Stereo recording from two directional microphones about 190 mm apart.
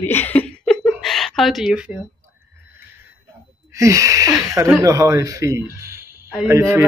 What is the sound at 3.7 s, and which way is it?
Speech, 15° right (ahead or behind).